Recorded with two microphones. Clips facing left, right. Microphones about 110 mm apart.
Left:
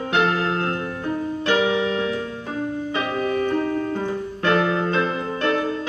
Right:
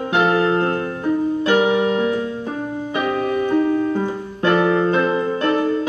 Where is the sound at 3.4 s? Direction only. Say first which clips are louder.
Right 5 dB; 20° right (ahead or behind).